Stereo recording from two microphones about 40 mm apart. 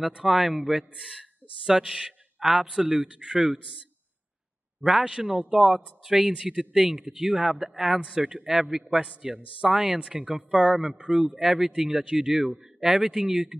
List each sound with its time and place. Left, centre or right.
0.2 s speech: centre
2.4 s a man's voice: centre
12.4 s speech: centre